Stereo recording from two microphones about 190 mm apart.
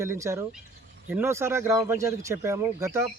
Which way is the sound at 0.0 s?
15° right (ahead or behind).